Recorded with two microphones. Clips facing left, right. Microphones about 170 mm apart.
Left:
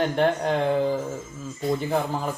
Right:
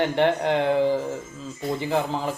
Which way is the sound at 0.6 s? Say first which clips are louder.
Right 2 dB; 15° right (ahead or behind).